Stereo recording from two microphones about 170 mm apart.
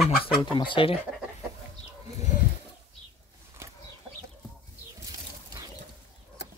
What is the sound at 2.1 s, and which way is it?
Bird, 45° left (ahead or behind).